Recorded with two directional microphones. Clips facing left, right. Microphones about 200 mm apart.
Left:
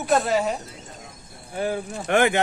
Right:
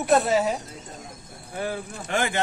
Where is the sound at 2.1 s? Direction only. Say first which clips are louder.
Left 7 dB; 60° left (ahead or behind).